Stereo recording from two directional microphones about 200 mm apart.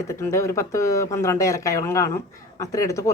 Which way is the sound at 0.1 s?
15° left (ahead or behind).